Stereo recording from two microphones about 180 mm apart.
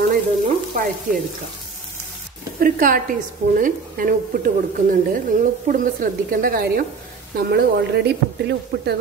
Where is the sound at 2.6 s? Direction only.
50° right (ahead or behind).